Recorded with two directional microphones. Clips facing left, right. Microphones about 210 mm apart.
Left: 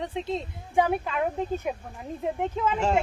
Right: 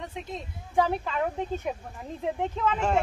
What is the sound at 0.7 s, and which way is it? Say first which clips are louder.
Speech: left 1 dB; 15° left (ahead or behind).